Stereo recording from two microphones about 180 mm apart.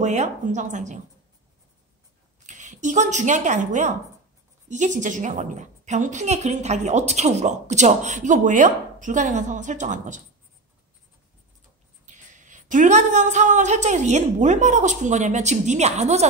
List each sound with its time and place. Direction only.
0.0 s a woman's voice: 40° right (ahead or behind)
2.4 s a woman's voice: 40° right (ahead or behind)
12.1 s a woman's voice: 45° right (ahead or behind)